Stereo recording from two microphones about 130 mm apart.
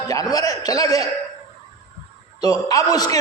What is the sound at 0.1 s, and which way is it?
Speech, 30° left (ahead or behind).